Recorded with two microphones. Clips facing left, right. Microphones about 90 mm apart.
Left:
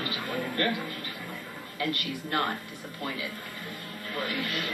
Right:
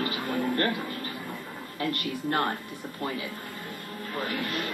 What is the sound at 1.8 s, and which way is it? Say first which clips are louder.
Speech: right 1 dB; 35° right (ahead or behind).